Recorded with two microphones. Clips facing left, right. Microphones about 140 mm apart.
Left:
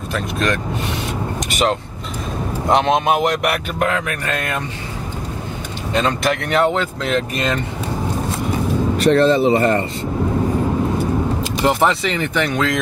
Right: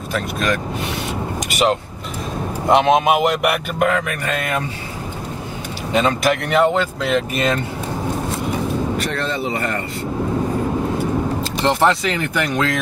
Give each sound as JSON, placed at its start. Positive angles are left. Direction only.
{"t": 0.1, "sound": "speech", "side_deg": 0}
{"t": 5.9, "sound": "speech", "side_deg": 0}
{"t": 8.9, "sound": "speech", "side_deg": 30}
{"t": 11.6, "sound": "speech", "side_deg": 0}